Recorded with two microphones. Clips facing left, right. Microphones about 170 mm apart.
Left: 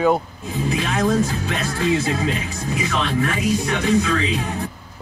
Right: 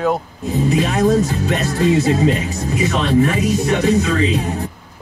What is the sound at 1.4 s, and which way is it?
Music, 40° right (ahead or behind).